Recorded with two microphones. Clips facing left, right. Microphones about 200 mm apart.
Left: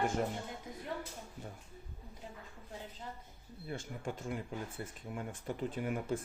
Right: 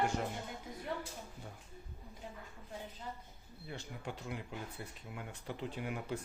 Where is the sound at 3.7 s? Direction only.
50° left (ahead or behind).